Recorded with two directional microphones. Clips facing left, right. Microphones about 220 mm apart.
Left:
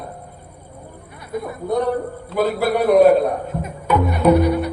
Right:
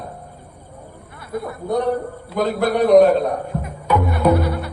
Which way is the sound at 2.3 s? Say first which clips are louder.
Even; 5° left (ahead or behind).